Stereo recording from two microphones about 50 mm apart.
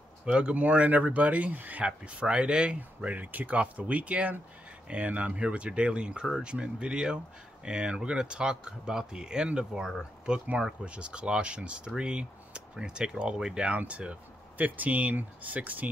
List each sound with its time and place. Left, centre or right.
0.2 s speech: right
1.9 s speech: right
13.7 s speech: right